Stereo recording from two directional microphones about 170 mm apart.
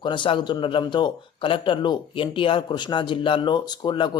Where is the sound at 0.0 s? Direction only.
30° left (ahead or behind).